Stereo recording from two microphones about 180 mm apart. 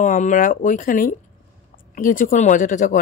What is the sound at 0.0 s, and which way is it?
Speech, 45° left (ahead or behind).